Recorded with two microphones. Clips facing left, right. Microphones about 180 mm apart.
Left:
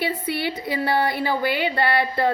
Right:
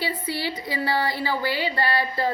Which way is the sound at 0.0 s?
60° left (ahead or behind).